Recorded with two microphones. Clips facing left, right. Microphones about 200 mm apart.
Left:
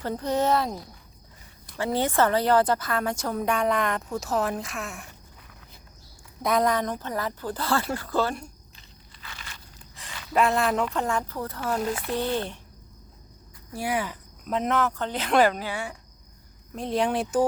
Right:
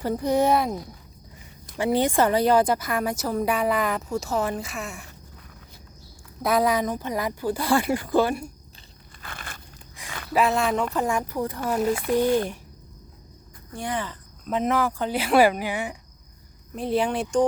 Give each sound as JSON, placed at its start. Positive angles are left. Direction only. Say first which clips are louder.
{"t": 0.0, "sound": "speech", "louder": "right 4 dB", "side_deg": -10}
{"t": 1.7, "sound": "a woman's voice", "louder": "right 3 dB", "side_deg": -15}
{"t": 6.4, "sound": "speech", "louder": "right 2 dB", "side_deg": -5}
{"t": 9.2, "sound": "a sound", "louder": "right 5 dB", "side_deg": -55}
{"t": 10.3, "sound": "a woman's voice", "louder": "right 1 dB", "side_deg": 0}
{"t": 10.9, "sound": "speech", "louder": "right 3 dB", "side_deg": -10}
{"t": 13.7, "sound": "speech", "louder": "left 1 dB", "side_deg": 10}
{"t": 14.5, "sound": "speech", "louder": "right 2 dB", "side_deg": -5}
{"t": 16.7, "sound": "a woman's voice", "louder": "right 1 dB", "side_deg": 0}